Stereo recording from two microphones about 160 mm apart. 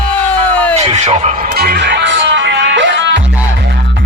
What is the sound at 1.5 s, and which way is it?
Music, 80° right.